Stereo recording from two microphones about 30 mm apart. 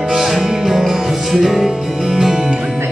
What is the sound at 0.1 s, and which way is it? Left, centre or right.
Music, centre.